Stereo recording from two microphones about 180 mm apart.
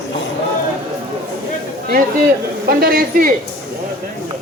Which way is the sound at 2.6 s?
60° right (ahead or behind).